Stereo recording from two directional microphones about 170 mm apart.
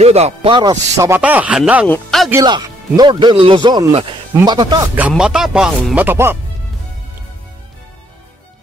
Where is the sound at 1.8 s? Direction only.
5° left (ahead or behind).